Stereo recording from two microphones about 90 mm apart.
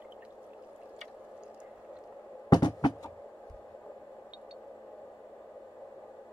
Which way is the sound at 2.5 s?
50° left (ahead or behind).